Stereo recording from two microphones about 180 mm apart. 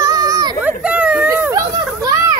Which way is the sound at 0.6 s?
10° right (ahead or behind).